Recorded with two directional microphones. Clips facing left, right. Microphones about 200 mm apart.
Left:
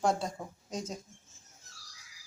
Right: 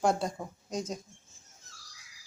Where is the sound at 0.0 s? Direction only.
Centre (ahead or behind).